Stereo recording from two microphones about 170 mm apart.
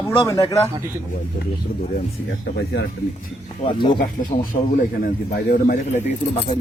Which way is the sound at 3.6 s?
30° left (ahead or behind).